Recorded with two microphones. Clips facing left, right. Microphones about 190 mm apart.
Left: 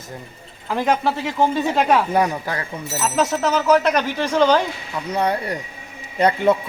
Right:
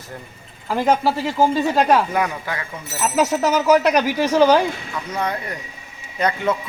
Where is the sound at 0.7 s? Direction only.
5° right (ahead or behind).